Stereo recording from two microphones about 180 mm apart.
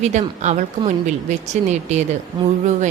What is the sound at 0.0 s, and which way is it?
A woman's voice, 40° right (ahead or behind).